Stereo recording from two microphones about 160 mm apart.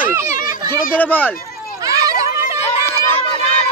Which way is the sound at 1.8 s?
20° right (ahead or behind).